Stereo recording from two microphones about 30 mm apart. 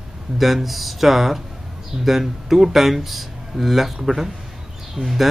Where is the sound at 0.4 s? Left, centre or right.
Centre.